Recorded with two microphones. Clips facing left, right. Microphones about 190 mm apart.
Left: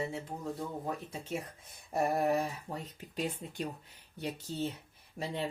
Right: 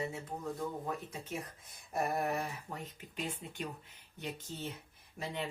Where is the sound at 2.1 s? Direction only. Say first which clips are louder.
Left 5 dB; 30° left (ahead or behind).